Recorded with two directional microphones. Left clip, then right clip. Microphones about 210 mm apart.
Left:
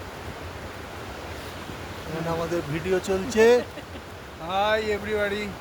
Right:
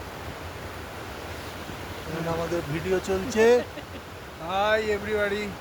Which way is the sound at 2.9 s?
20° left (ahead or behind).